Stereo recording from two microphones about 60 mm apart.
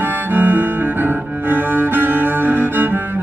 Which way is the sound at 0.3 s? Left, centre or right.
Right.